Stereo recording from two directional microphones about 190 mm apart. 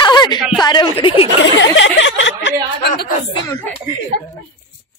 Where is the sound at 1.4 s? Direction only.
70° left (ahead or behind); by 3.0 s 55° left (ahead or behind).